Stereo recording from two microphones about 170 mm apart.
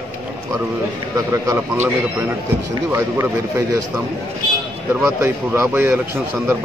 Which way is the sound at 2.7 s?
15° right (ahead or behind).